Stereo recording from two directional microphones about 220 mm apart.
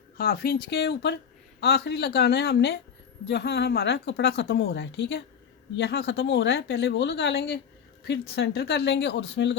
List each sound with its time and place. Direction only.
0.2 s speech: 45° left (ahead or behind)